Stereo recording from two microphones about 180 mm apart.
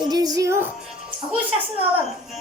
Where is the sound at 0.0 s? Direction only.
20° right (ahead or behind).